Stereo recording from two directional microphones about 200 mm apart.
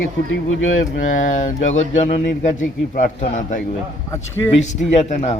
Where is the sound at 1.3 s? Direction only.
35° left (ahead or behind).